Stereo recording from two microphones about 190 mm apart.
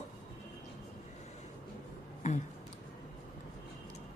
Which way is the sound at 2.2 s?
40° left (ahead or behind).